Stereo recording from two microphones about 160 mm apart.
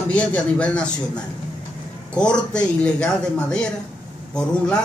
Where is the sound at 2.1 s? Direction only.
5° left (ahead or behind).